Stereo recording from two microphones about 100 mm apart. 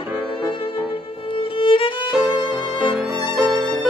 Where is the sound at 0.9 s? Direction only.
65° left (ahead or behind).